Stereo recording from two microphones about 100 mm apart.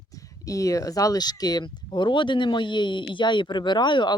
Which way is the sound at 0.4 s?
35° left (ahead or behind).